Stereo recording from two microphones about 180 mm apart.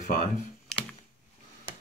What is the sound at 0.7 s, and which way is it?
Computer keyboard, 5° left (ahead or behind).